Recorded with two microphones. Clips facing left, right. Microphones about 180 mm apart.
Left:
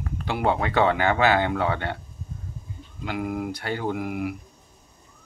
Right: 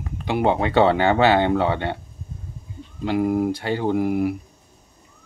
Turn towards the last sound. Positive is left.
turn(degrees=-30)  # may be behind; listen again after turning